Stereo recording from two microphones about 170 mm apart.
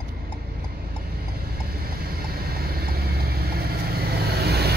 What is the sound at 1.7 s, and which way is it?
Vehicle, 65° right (ahead or behind).